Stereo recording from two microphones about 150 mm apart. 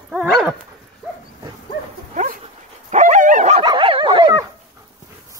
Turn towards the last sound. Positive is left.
turn(degrees=-25)  # may be behind; listen again after turning